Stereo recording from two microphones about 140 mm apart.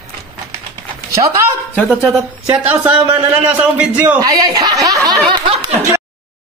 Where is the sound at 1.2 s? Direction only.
40° right (ahead or behind).